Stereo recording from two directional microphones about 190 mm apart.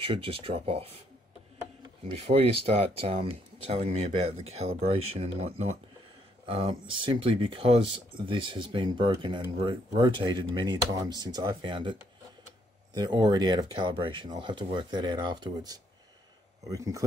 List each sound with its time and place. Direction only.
0.0 s speech: 30° right (ahead or behind)
2.0 s speech: 30° right (ahead or behind)